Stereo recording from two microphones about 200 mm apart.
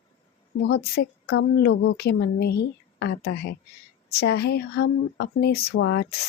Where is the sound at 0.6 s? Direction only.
50° left (ahead or behind).